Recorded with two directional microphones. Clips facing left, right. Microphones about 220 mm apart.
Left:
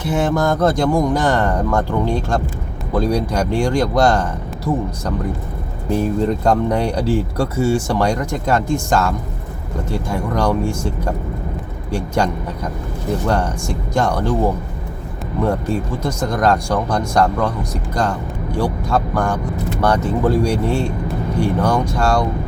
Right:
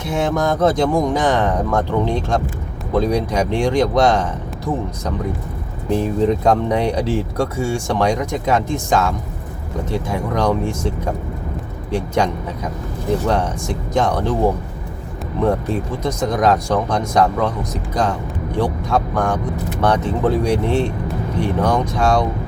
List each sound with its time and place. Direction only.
0.0 s speech: centre (ahead or behind)
5.9 s speech: centre (ahead or behind)
11.9 s speech: centre (ahead or behind)
16.0 s speech: centre (ahead or behind)
21.6 s speech: centre (ahead or behind)